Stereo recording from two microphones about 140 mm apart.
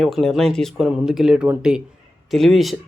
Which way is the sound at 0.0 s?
Centre (ahead or behind).